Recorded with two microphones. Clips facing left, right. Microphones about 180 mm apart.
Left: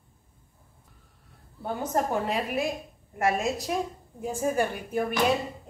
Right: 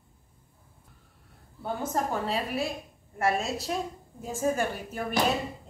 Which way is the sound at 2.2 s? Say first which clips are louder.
Left 2 dB; 15° left (ahead or behind).